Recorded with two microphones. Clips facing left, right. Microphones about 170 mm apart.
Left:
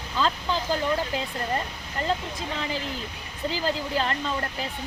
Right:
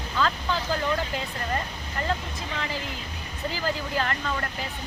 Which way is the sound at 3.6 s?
25° left (ahead or behind).